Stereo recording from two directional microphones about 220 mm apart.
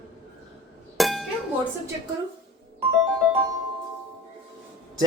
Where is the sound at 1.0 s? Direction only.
Centre (ahead or behind).